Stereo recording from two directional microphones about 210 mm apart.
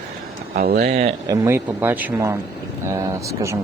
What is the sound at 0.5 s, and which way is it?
Speech, 45° right (ahead or behind).